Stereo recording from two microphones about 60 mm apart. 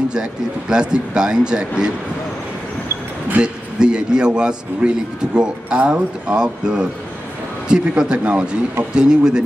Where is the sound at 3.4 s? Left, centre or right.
Centre.